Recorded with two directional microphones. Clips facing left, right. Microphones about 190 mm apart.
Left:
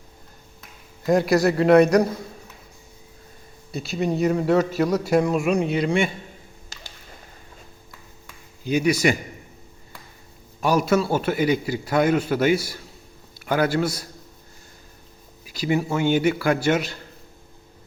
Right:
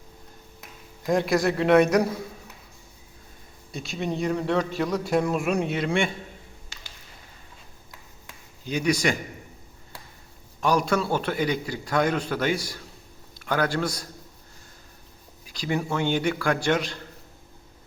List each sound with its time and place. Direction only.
1.0 s a man's voice: 5° left (ahead or behind)
3.7 s a man's voice: 5° left (ahead or behind)
6.7 s a sound: 40° left (ahead or behind)
8.6 s a man's voice: 10° left (ahead or behind)
10.6 s a man's voice: 5° left (ahead or behind)
15.4 s a man's voice: 5° left (ahead or behind)